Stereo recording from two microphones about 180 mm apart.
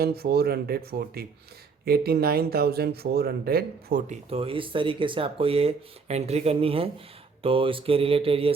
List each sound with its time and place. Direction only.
0.0 s speech: 60° right (ahead or behind)
4.0 s speech: 35° right (ahead or behind)